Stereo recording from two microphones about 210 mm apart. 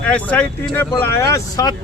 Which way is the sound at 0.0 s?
5° left (ahead or behind).